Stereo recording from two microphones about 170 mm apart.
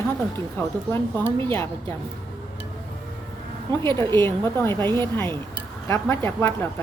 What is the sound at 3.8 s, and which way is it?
Speech, 25° right (ahead or behind).